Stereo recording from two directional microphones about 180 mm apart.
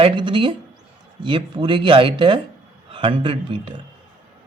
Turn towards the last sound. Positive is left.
turn(degrees=-30)  # may be behind; listen again after turning